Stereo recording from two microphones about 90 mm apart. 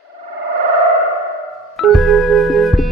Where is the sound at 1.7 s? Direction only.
Centre (ahead or behind).